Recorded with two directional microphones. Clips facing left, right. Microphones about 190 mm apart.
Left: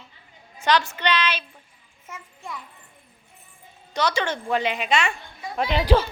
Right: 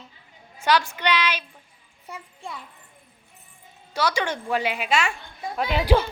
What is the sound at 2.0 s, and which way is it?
Speech, 30° right (ahead or behind).